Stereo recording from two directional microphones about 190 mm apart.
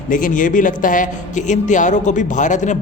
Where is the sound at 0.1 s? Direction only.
45° left (ahead or behind).